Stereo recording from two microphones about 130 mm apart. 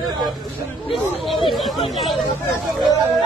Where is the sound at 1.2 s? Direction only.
Centre (ahead or behind).